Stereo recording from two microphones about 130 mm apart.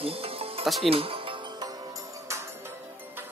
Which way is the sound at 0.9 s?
45° right (ahead or behind).